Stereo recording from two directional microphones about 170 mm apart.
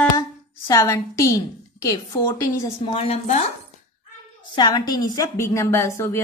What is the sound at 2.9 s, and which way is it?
Speech, 35° left (ahead or behind).